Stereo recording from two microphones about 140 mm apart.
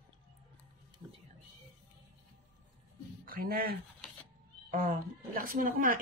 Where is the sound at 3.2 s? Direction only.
90° right.